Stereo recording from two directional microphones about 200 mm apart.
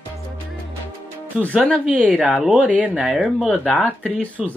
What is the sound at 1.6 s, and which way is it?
Speech, 5° right (ahead or behind).